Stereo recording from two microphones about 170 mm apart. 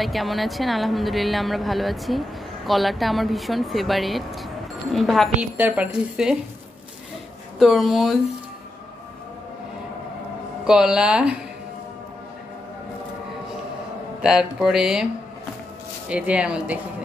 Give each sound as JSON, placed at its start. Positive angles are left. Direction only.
{"t": 0.0, "sound": "a woman's voice", "side_deg": 0}
{"t": 7.5, "sound": "a woman's voice", "side_deg": 0}
{"t": 10.6, "sound": "a woman's voice", "side_deg": -5}
{"t": 14.2, "sound": "a woman's voice", "side_deg": -5}
{"t": 16.1, "sound": "speech", "side_deg": -5}